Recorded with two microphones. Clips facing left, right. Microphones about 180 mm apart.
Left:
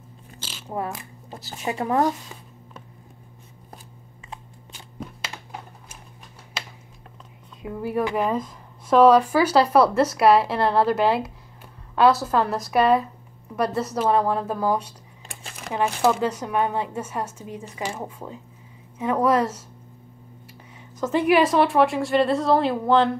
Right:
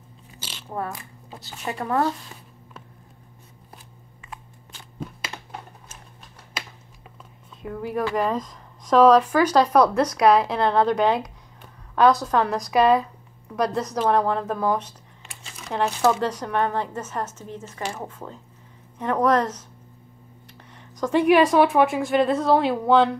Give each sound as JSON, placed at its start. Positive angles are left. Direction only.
{"t": 0.4, "sound": "a sound", "side_deg": 0}
{"t": 0.7, "sound": "speech", "side_deg": 15}
{"t": 7.6, "sound": "a woman's voice", "side_deg": 5}
{"t": 15.4, "sound": "crumpling", "side_deg": 55}
{"t": 15.7, "sound": "speech", "side_deg": 10}
{"t": 20.7, "sound": "a woman's voice", "side_deg": 5}